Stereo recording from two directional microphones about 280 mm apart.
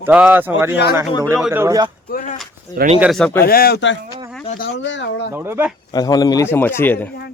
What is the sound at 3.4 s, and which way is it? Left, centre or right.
Speech, left.